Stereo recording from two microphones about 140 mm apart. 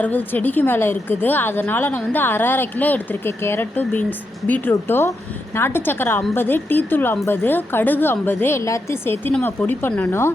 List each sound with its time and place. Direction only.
0.0 s speech: 10° left (ahead or behind)